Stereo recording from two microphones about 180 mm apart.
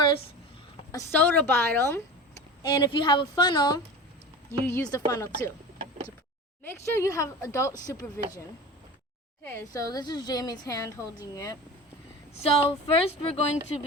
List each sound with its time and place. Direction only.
0.9 s speech: 15° left (ahead or behind)
2.6 s a woman's voice: 25° left (ahead or behind)
6.7 s a woman's voice: 15° left (ahead or behind)
12.4 s speech: 35° left (ahead or behind)